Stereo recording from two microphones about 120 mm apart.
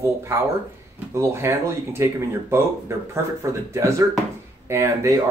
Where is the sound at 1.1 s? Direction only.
20° right (ahead or behind).